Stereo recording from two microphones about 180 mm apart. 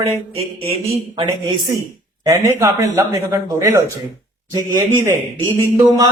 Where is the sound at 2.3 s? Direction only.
15° right (ahead or behind).